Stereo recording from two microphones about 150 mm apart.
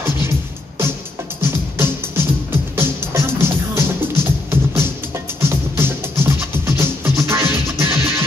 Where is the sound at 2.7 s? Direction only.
15° right (ahead or behind).